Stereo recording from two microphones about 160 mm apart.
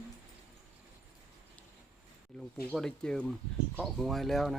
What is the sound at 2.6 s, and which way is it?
Speech, 5° left (ahead or behind).